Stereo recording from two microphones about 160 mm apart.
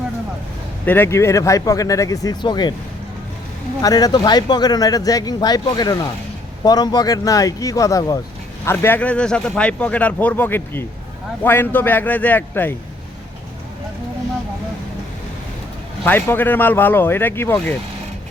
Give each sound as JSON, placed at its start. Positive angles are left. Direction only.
{"t": 0.9, "sound": "speech", "side_deg": 15}
{"t": 3.8, "sound": "speech", "side_deg": 25}
{"t": 16.0, "sound": "speech", "side_deg": 10}